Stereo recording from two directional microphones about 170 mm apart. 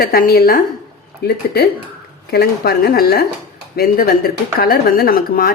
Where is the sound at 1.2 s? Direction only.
70° left (ahead or behind).